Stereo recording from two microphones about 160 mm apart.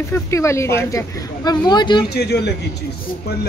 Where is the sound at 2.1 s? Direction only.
90° left.